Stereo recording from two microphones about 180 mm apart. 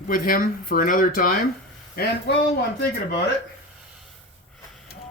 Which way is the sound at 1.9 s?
60° left (ahead or behind).